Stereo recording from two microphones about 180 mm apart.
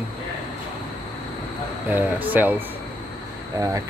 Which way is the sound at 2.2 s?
10° right (ahead or behind).